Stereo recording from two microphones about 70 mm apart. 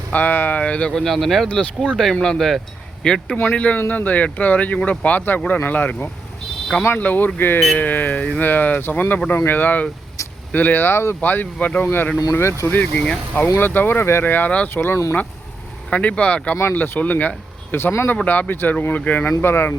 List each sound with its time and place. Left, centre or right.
0.1 s speech: left
0.9 s speech: centre; by 9.9 s left
10.2 s vehicle: left
10.5 s speech: left
11.2 s speech: left
12.2 s speech: left
12.6 s speech: left
12.9 s speech: centre
13.6 s speech: left
14.7 s speech: left
15.9 s speech: centre
19.4 s speech: left